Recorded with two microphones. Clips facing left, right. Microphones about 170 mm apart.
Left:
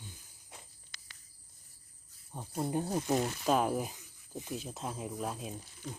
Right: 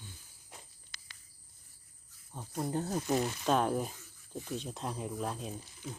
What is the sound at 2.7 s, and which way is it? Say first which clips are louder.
Speech: left 1 dB; 15° left (ahead or behind).